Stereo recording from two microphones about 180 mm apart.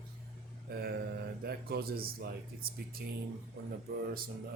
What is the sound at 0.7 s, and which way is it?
Speech, 60° right (ahead or behind).